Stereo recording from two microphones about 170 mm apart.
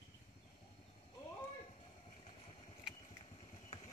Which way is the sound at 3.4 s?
35° left (ahead or behind).